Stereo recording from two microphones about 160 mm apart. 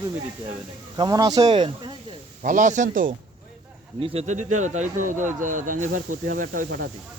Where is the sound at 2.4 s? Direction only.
55° right (ahead or behind).